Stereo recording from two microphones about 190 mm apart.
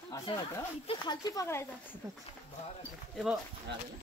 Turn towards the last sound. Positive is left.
turn(degrees=0)  # may be behind; listen again after turning